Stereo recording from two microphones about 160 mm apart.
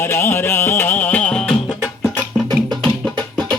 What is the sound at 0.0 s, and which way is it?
Music, 15° left (ahead or behind).